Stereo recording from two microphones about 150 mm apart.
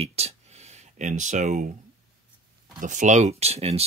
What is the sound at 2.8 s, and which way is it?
Speech, 55° right (ahead or behind).